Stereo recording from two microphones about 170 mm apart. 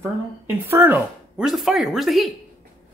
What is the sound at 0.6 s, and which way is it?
Speech, 15° right (ahead or behind).